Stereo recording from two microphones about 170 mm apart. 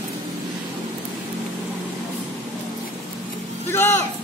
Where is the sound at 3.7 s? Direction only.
15° left (ahead or behind).